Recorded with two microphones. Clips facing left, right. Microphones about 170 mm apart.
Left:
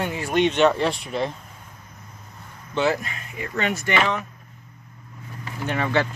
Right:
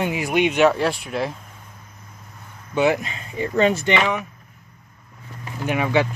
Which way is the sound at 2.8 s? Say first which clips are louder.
Right 3 dB; 20° right (ahead or behind).